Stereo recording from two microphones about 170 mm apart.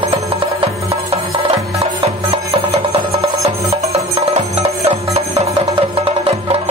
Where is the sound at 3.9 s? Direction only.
35° right (ahead or behind).